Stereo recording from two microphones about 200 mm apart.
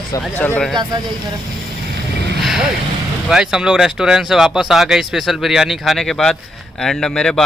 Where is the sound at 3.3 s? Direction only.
5° right (ahead or behind).